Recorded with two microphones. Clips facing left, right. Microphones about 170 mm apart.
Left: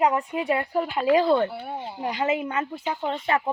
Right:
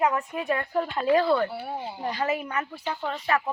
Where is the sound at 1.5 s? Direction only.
Centre (ahead or behind).